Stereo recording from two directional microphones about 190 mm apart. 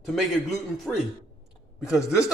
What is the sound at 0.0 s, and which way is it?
A man's voice, centre (ahead or behind).